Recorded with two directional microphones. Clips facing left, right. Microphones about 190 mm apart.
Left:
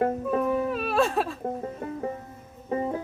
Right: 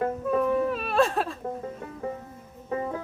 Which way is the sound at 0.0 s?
35° left (ahead or behind).